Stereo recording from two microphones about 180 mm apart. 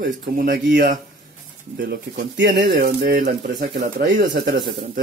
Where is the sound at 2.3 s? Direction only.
65° right (ahead or behind).